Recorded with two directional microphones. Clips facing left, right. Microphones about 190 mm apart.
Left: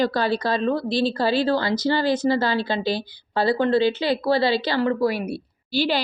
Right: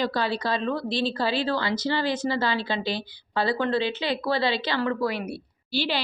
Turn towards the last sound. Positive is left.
turn(degrees=45)  # may be behind; listen again after turning